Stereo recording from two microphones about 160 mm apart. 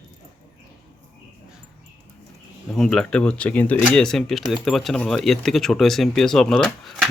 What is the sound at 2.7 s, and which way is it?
Speech, centre (ahead or behind).